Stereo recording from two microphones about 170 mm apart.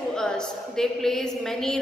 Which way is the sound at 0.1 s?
5° left (ahead or behind).